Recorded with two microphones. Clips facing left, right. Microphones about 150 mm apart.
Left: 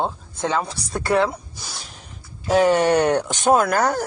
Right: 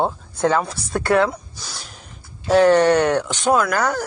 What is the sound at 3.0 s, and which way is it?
Speech, 35° left (ahead or behind).